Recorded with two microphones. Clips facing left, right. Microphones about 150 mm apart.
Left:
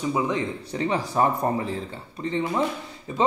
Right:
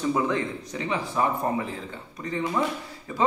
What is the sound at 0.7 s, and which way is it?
Speech, 35° left (ahead or behind).